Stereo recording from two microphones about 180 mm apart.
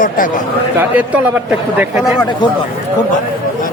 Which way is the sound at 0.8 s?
10° right (ahead or behind).